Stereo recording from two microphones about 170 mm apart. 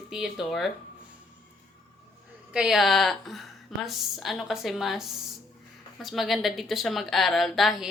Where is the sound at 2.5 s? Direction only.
5° right (ahead or behind).